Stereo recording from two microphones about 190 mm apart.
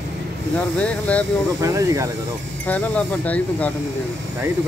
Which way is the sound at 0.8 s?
5° left (ahead or behind).